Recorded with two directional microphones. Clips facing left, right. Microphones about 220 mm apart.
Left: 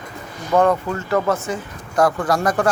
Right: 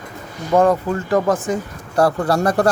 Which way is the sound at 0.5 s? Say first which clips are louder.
Right 2 dB; 20° right (ahead or behind).